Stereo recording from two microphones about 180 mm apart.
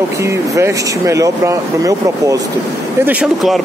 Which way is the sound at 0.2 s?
15° right (ahead or behind).